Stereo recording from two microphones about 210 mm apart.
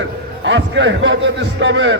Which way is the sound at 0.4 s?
60° right (ahead or behind).